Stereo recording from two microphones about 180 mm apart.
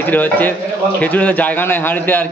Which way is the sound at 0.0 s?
10° left (ahead or behind).